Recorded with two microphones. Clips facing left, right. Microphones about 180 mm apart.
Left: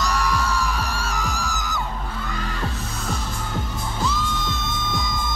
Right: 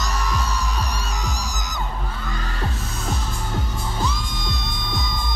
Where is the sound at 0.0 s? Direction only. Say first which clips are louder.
Left 3 dB; 20° right (ahead or behind).